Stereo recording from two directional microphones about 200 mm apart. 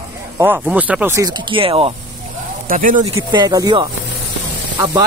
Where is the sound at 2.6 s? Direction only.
40° right (ahead or behind).